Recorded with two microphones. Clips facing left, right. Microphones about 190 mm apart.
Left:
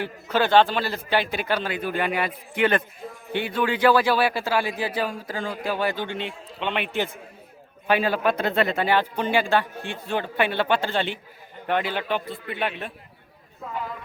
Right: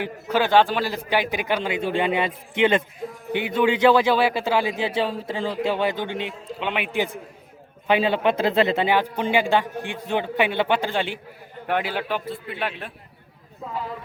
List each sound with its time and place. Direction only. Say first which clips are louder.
0.0 s a man's voice: right 1 dB; 15° right (ahead or behind)